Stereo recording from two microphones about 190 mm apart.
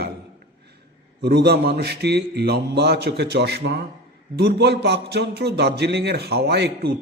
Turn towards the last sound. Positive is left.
turn(degrees=-60)  # may be behind; listen again after turning